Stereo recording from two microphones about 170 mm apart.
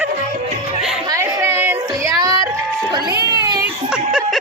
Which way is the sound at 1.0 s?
20° right (ahead or behind).